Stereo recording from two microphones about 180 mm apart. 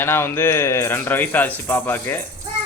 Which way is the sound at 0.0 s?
10° left (ahead or behind).